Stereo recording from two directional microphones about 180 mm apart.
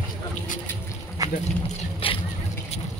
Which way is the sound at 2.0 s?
30° left (ahead or behind).